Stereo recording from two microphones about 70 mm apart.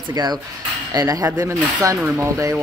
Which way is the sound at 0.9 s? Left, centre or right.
Right.